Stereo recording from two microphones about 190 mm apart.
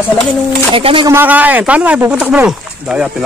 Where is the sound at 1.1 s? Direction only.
10° right (ahead or behind).